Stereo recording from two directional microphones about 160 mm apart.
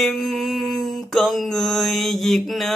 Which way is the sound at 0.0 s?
Centre (ahead or behind).